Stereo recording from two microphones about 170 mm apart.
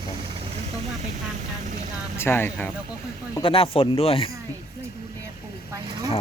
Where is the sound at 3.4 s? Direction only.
35° left (ahead or behind).